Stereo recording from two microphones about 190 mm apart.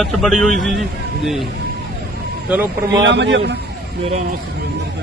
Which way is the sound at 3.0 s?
70° right (ahead or behind).